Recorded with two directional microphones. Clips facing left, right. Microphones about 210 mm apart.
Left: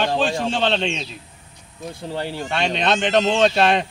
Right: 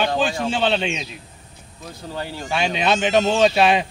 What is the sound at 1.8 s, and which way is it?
Speech, 25° left (ahead or behind).